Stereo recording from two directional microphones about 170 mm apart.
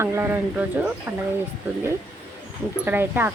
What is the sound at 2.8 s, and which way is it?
Speech, 10° right (ahead or behind).